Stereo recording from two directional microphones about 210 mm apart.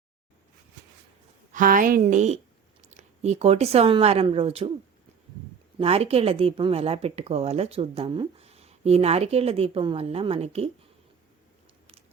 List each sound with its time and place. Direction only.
1.5 s a woman's voice: 40° right (ahead or behind)
5.8 s speech: 30° right (ahead or behind)